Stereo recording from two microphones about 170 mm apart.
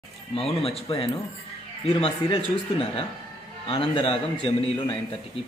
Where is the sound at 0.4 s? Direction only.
35° left (ahead or behind).